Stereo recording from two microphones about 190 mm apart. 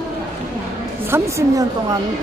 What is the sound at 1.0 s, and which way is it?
Speech, 15° right (ahead or behind).